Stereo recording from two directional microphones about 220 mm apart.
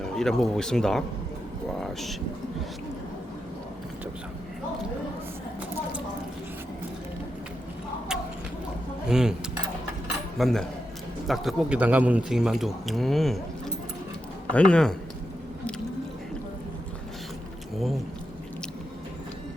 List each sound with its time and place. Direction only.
0.0 s a man's voice: centre (ahead or behind)
9.0 s speech: 5° right (ahead or behind)
10.3 s a man's voice: centre (ahead or behind)
14.5 s a man's voice: 5° left (ahead or behind)
17.7 s a man's voice: centre (ahead or behind)